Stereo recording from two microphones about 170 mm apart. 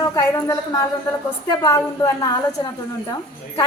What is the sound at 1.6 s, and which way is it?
Speech, 20° left (ahead or behind).